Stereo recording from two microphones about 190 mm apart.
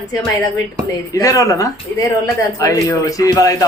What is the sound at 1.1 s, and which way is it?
A man's voice, 15° left (ahead or behind).